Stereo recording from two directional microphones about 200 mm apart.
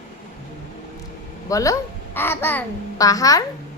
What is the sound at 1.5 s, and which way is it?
A child's voice, 15° left (ahead or behind).